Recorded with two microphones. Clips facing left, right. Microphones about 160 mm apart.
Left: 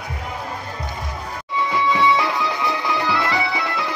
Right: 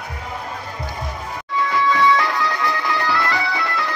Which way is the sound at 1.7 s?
20° left (ahead or behind).